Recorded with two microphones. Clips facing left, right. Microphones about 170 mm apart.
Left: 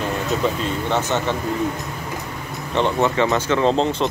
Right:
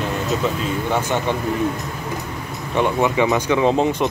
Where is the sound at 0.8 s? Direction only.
10° right (ahead or behind).